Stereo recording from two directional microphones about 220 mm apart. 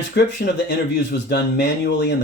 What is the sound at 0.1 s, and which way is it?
Speech, 50° left (ahead or behind).